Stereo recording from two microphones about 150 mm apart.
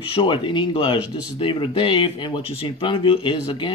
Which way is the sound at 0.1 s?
35° left (ahead or behind).